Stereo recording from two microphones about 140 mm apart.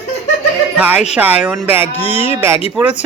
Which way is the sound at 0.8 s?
10° right (ahead or behind).